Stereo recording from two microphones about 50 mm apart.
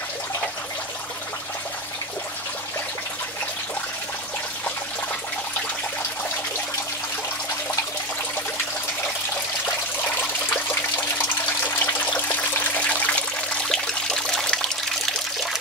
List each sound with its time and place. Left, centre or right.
11.6 s water: left
13.7 s water: centre